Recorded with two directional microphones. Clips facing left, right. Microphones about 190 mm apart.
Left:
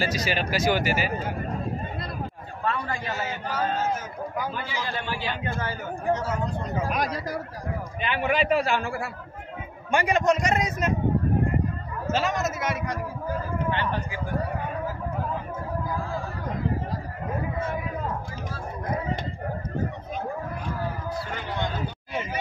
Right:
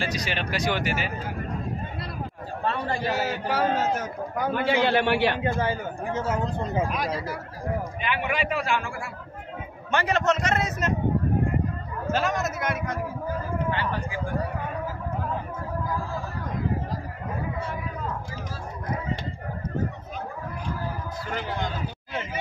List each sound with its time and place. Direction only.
0.0 s speech: 5° left (ahead or behind)
2.6 s a man's voice: 35° right (ahead or behind)
3.1 s a man's voice: 70° right (ahead or behind)
5.4 s speech: 25° right (ahead or behind)
6.9 s speech: 45° left (ahead or behind)
8.0 s a man's voice: 30° left (ahead or behind)
9.8 s a man's voice: 10° left (ahead or behind)
12.1 s speech: centre (ahead or behind)